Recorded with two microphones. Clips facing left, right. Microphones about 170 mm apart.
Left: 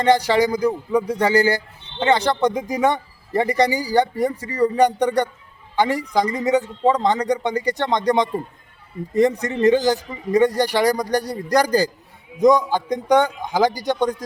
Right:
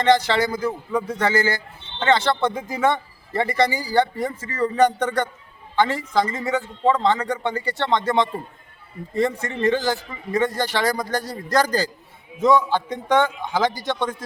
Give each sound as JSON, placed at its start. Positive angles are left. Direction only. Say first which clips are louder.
{"t": 0.0, "sound": "a man's voice", "louder": "left 2 dB", "side_deg": 15}
{"t": 9.4, "sound": "a man's voice", "louder": "left 5 dB", "side_deg": 20}